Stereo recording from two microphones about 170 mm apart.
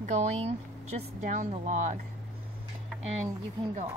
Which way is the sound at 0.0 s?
45° right (ahead or behind).